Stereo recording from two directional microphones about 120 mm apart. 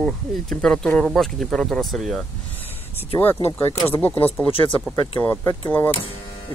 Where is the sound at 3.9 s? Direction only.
15° left (ahead or behind).